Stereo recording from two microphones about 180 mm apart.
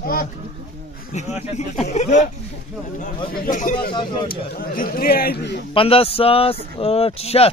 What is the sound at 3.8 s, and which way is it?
Speech, 25° left (ahead or behind).